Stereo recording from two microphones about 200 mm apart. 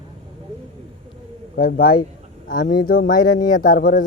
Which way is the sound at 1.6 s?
45° left (ahead or behind).